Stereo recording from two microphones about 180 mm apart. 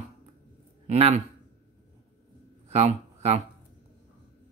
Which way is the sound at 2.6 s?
35° right (ahead or behind).